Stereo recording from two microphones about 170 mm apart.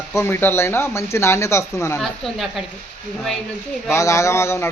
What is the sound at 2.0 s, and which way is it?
Speech, centre (ahead or behind).